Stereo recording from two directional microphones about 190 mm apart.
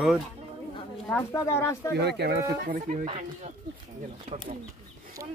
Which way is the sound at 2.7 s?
40° right (ahead or behind).